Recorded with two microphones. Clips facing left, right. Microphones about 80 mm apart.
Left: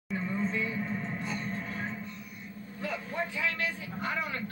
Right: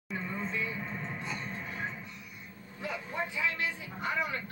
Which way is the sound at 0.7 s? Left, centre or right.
Right.